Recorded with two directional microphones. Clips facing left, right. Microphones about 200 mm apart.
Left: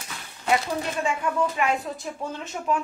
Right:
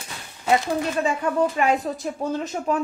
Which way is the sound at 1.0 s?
40° right (ahead or behind).